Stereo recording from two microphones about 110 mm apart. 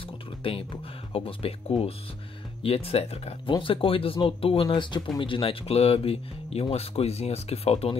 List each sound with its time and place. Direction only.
0.4 s speech: 55° left (ahead or behind)
3.5 s speech: 50° left (ahead or behind)